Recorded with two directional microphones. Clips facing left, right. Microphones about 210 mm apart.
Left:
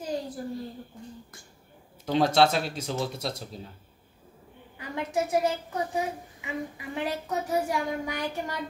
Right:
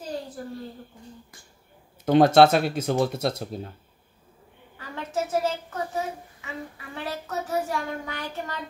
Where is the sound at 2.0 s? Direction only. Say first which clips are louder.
Right 6 dB; 55° right (ahead or behind).